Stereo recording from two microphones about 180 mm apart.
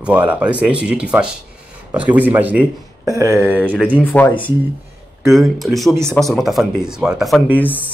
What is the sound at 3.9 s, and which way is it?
Speech, 10° left (ahead or behind).